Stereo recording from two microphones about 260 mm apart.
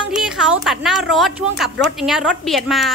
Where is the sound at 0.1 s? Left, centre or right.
Centre.